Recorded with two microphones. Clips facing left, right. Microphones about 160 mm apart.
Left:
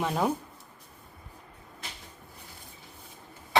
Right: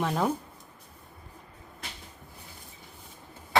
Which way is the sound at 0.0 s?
Centre (ahead or behind).